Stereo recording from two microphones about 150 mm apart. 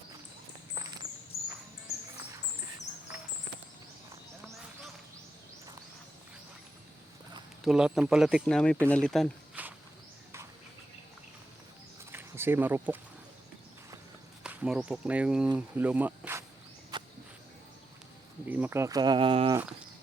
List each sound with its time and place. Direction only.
7.6 s speech: 5° right (ahead or behind)
9.6 s insect: 10° right (ahead or behind)
12.1 s speech: 15° right (ahead or behind)
14.4 s speech: 5° right (ahead or behind)
16.9 s walk: 30° right (ahead or behind)
18.4 s speech: 10° right (ahead or behind); by 19.5 s 35° right (ahead or behind)